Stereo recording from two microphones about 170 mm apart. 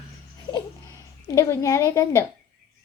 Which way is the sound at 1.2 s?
20° left (ahead or behind).